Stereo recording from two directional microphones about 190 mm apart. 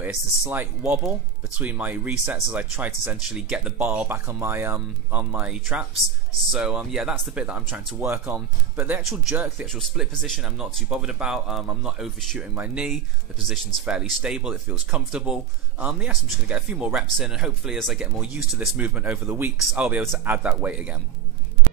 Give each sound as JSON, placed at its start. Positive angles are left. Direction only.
{"t": 0.0, "sound": "speech", "side_deg": -10}